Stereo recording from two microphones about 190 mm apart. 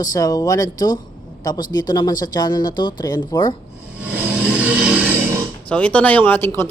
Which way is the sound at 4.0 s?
10° right (ahead or behind).